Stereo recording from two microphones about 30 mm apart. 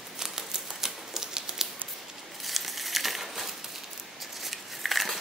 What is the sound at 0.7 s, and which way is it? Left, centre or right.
Typewriter, centre.